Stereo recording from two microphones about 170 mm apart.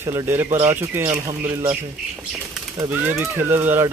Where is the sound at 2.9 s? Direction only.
10° right (ahead or behind).